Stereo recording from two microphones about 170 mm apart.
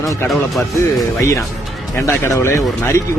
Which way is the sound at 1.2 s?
15° left (ahead or behind).